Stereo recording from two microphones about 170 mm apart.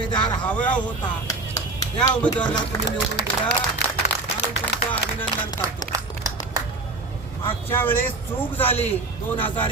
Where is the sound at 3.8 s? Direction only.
80° left.